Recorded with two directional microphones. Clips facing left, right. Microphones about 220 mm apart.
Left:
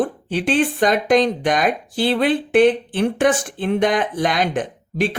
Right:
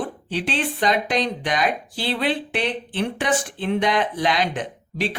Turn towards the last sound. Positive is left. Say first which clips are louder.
# left 5 dB
turn(degrees=50)  # may be behind; listen again after turning